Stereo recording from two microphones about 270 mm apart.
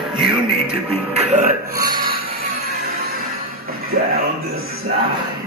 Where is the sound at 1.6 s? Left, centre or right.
Right.